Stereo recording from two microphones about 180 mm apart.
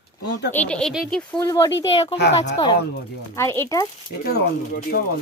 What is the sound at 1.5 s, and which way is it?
Speech, 20° left (ahead or behind).